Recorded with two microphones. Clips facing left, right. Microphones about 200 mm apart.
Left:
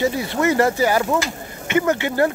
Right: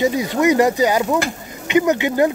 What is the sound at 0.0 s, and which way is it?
Speech, 15° right (ahead or behind).